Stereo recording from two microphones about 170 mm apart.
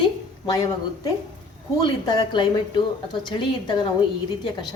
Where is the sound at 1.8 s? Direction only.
25° left (ahead or behind).